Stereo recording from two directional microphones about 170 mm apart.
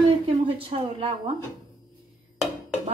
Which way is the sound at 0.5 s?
35° right (ahead or behind).